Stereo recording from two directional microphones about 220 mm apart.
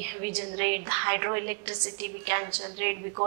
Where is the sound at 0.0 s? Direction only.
15° right (ahead or behind).